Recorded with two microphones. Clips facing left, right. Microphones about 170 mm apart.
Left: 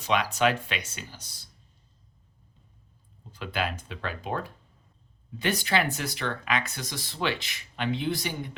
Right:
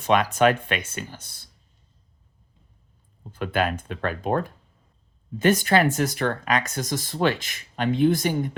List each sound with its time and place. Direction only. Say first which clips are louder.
0.0 s speech: right 6 dB; 50° right (ahead or behind)
3.3 s speech: right 7 dB; 50° right (ahead or behind)